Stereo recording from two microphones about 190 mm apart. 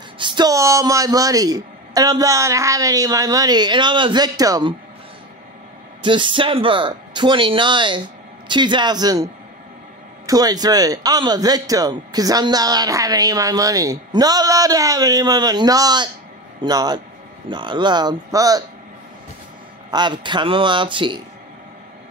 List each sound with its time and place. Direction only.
0.2 s a man's voice: 25° right (ahead or behind)
6.0 s a man's voice: 25° right (ahead or behind)
19.9 s a man's voice: 25° right (ahead or behind)